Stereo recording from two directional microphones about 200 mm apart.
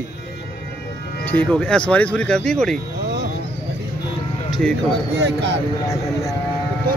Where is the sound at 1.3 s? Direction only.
5° left (ahead or behind).